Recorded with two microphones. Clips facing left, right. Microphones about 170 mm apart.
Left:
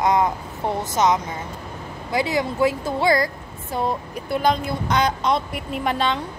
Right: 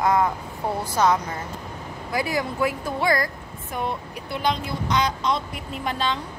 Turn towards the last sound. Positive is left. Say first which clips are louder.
# left 4 dB
turn(degrees=60)  # may be behind; listen again after turning